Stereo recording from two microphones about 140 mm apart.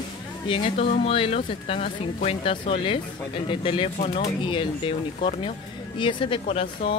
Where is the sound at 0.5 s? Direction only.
45° left (ahead or behind).